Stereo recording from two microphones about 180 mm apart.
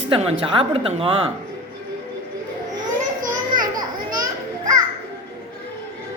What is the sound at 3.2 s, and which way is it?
Children playing, 50° right (ahead or behind).